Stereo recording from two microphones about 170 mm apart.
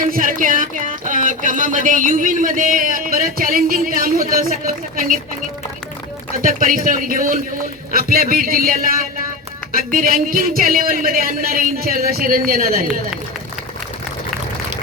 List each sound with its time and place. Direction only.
0.0 s speech: 55° right (ahead or behind)
6.3 s speech: 55° right (ahead or behind)